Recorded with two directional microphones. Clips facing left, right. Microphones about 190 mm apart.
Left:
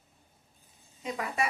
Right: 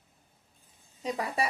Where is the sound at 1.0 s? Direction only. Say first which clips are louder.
Right 1 dB; 35° right (ahead or behind).